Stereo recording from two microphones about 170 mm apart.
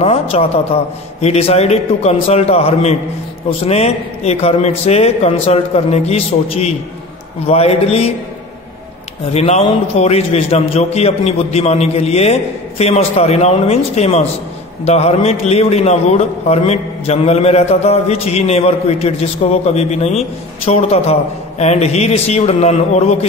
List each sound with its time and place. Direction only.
0.0 s a man's voice: 35° left (ahead or behind)
9.3 s a man's voice: 35° left (ahead or behind)